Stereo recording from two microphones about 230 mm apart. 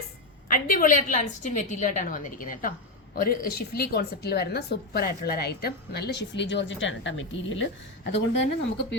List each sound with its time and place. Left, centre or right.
0.4 s a woman's voice: left